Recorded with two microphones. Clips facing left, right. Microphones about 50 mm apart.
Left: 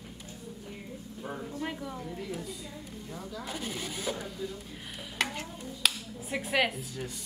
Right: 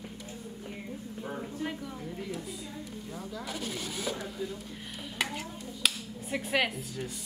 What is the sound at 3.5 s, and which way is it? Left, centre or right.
Speech, centre.